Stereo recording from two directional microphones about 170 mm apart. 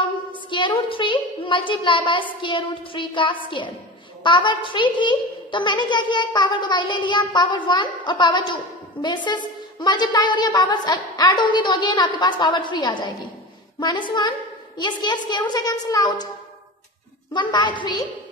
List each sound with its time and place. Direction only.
0.5 s a woman's voice: 30° left (ahead or behind)
17.3 s a child's voice: 25° left (ahead or behind)